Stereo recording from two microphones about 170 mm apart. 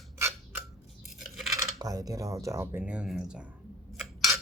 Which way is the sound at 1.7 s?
20° right (ahead or behind).